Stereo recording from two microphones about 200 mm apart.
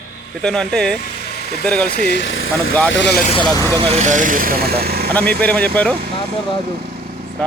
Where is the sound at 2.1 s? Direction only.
65° left (ahead or behind).